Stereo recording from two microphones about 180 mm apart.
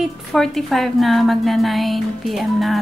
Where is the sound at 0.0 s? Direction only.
Centre (ahead or behind).